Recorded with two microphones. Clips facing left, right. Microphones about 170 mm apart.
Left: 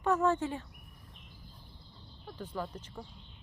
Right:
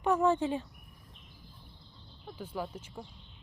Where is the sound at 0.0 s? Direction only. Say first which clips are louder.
Right 2 dB; 15° right (ahead or behind).